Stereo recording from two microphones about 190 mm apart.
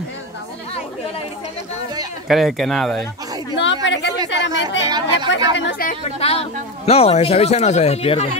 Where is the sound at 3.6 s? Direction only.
70° left (ahead or behind).